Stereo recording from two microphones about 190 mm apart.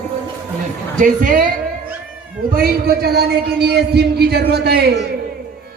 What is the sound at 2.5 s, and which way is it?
A man's voice, 55° right (ahead or behind).